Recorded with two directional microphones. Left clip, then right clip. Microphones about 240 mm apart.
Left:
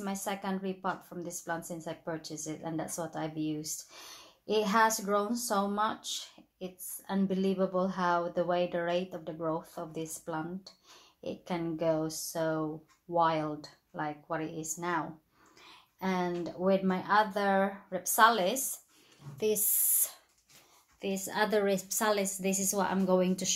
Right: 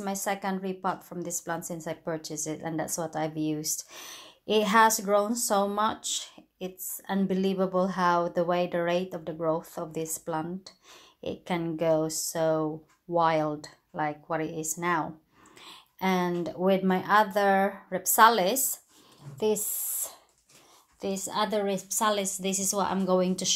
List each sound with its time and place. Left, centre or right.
0.0 s speech: right
19.3 s a sound: centre
21.0 s a woman's voice: centre